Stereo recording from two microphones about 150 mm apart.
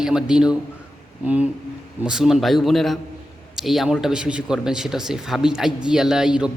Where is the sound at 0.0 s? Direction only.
5° right (ahead or behind).